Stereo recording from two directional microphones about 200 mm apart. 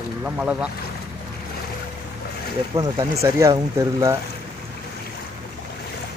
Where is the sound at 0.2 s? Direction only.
5° right (ahead or behind).